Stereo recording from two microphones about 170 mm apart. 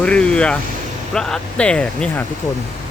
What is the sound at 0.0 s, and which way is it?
Speech, 5° left (ahead or behind).